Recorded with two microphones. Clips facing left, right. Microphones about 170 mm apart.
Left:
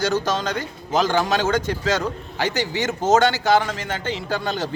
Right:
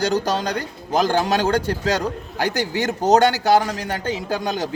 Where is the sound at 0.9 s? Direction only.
40° right (ahead or behind).